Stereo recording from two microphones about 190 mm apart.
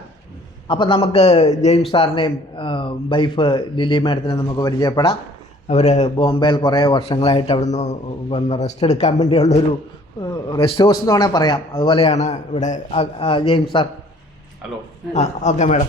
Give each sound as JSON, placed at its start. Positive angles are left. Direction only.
{"t": 0.7, "sound": "a man's voice", "side_deg": 25}
{"t": 5.6, "sound": "a man's voice", "side_deg": 35}
{"t": 6.1, "sound": "a man's voice", "side_deg": 25}
{"t": 10.5, "sound": "speech", "side_deg": 25}
{"t": 12.1, "sound": "a man's voice", "side_deg": 35}
{"t": 15.1, "sound": "a man's voice", "side_deg": 40}